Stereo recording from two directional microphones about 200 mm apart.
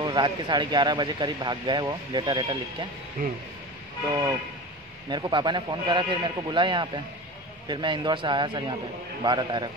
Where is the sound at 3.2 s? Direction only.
45° right (ahead or behind).